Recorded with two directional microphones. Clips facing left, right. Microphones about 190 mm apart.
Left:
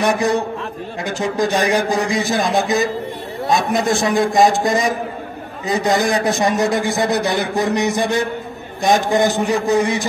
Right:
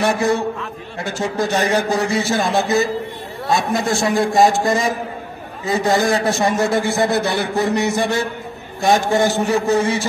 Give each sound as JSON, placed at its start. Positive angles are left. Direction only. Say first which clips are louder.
{"t": 0.0, "sound": "a man's voice", "louder": "even", "side_deg": 15}